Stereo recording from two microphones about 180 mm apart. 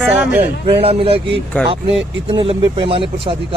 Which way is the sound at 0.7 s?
30° right (ahead or behind).